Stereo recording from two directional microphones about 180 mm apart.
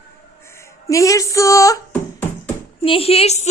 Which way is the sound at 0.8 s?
20° left (ahead or behind).